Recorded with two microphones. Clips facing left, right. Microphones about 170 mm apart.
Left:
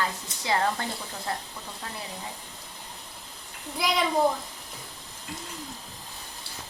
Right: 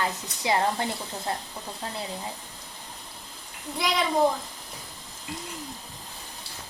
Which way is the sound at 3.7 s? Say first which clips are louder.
Even; centre (ahead or behind).